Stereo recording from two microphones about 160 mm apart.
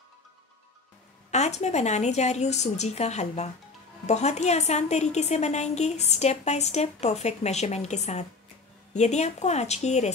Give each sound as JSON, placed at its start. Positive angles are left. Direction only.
{"t": 1.3, "sound": "a woman's voice", "side_deg": 45}